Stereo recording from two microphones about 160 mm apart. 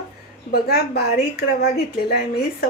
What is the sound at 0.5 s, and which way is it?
A woman's voice, 80° left.